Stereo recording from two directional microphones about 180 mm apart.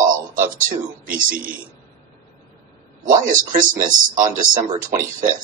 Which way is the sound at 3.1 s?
45° right (ahead or behind).